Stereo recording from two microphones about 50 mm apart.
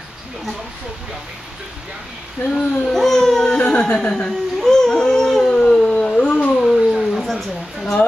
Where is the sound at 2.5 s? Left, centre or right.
Centre.